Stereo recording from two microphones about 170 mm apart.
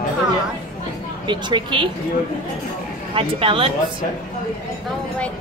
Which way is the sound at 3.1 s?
30° right (ahead or behind).